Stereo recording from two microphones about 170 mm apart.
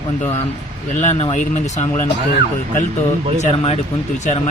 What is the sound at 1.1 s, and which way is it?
Speech, 40° left (ahead or behind).